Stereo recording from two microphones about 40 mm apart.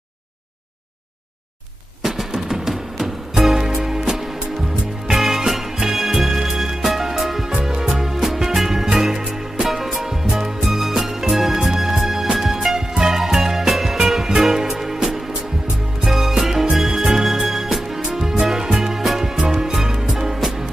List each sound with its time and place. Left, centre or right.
2.0 s music: centre